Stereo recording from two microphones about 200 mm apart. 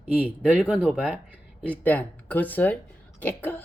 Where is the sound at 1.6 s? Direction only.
10° left (ahead or behind).